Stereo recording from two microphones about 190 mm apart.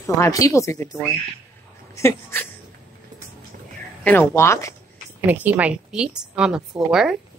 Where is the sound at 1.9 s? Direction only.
15° left (ahead or behind).